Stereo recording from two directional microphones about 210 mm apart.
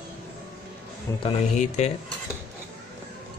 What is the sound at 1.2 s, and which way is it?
Speech, 30° left (ahead or behind).